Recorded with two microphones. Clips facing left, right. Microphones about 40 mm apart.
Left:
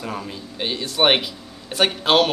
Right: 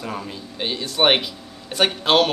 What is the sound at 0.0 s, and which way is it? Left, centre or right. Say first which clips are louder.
Speech: even; centre.